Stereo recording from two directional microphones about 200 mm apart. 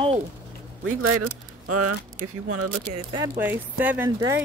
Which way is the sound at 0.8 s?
90° right.